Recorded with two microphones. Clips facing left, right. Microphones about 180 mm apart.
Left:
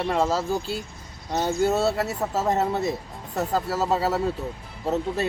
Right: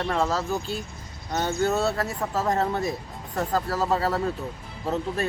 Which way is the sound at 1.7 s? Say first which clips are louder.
Left 2 dB; 25° left (ahead or behind).